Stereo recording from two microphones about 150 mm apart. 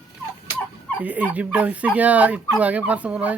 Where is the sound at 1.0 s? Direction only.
10° right (ahead or behind).